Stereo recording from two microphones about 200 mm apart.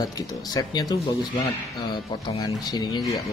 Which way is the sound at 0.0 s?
20° left (ahead or behind).